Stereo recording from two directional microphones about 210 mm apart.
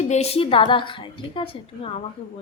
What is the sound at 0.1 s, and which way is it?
A woman's voice, 30° left (ahead or behind).